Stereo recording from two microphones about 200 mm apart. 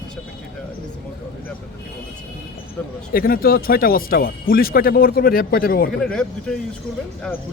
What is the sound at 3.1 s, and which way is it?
Speech, 50° left (ahead or behind).